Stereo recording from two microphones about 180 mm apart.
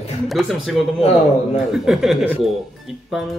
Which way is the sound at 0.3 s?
Centre (ahead or behind).